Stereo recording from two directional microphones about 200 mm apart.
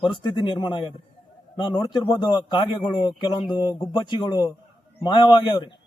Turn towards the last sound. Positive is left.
turn(degrees=20)  # may be behind; listen again after turning